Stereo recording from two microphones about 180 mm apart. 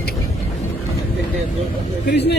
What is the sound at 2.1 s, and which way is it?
Speech, 70° left (ahead or behind).